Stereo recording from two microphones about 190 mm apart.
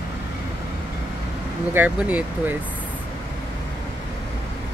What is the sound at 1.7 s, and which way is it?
Speech, 5° right (ahead or behind).